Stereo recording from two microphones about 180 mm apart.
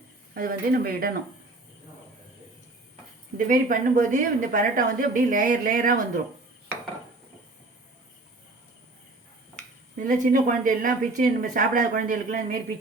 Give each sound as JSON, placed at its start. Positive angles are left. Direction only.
{"t": 0.3, "sound": "speech", "side_deg": -55}
{"t": 3.3, "sound": "speech", "side_deg": -50}
{"t": 10.0, "sound": "speech", "side_deg": -50}